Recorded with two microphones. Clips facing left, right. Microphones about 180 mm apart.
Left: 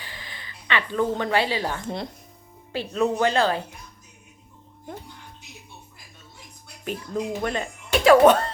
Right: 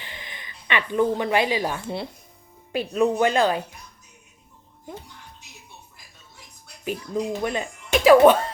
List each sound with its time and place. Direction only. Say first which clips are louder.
0.0 s speech: right 1 dB; 20° right (ahead or behind)
6.8 s speech: right 2 dB; 10° right (ahead or behind)